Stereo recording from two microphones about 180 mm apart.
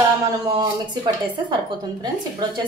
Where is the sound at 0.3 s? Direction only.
20° right (ahead or behind).